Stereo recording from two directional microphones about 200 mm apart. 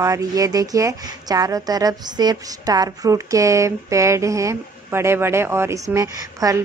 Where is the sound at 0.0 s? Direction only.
15° right (ahead or behind).